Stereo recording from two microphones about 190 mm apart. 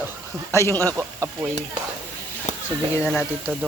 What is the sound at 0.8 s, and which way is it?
Speech, 15° right (ahead or behind).